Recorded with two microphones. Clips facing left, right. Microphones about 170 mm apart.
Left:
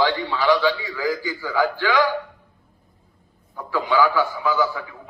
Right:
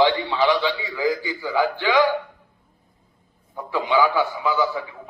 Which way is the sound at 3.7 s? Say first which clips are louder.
Even; 20° right (ahead or behind).